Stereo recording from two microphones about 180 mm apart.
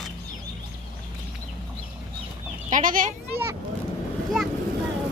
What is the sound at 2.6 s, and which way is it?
Speech, 45° right (ahead or behind).